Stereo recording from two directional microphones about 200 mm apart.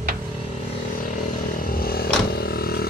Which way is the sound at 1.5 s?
45° left (ahead or behind).